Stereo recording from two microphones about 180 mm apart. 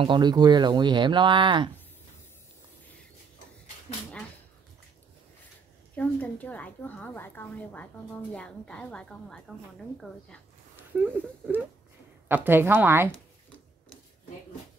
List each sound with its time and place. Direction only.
0.0 s speech: 25° right (ahead or behind)
5.9 s a woman's voice: 10° left (ahead or behind)
11.1 s a woman's voice: 10° right (ahead or behind)